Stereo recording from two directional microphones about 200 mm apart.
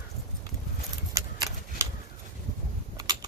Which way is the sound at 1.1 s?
15° right (ahead or behind).